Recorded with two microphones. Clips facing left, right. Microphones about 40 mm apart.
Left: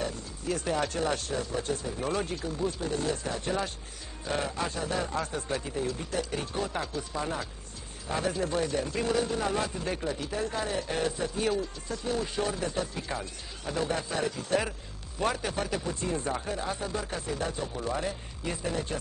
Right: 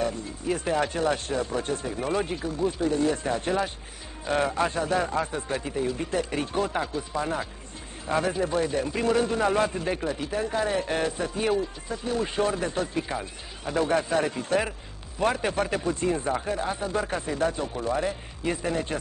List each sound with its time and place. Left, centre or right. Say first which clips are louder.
0.5 s speech: right 4 dB; right
1.2 s speech: right 4 dB; right
2.0 s speech: right 4 dB; centre
2.8 s speech: right 6 dB; right
6.0 s speech: right 5 dB; right
9.0 s speech: right 7 dB; right
10.7 s speech: right 4 dB; right
13.1 s speech: right 3 dB; centre
13.8 s speech: right 7 dB; right
16.3 s speech: right 4 dB; centre
16.9 s speech: right 5 dB; right
17.7 s speech: right 5 dB; centre